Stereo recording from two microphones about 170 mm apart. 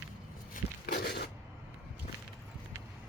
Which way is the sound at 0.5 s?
60° left (ahead or behind).